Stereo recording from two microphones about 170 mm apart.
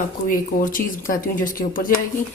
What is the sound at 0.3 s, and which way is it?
Speech, 55° left (ahead or behind).